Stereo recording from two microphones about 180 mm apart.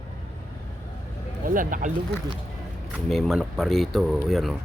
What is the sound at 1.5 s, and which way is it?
Speech, 50° right (ahead or behind).